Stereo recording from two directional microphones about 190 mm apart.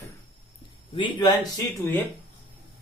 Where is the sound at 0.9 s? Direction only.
25° left (ahead or behind).